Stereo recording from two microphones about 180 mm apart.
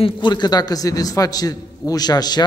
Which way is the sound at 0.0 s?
25° left (ahead or behind).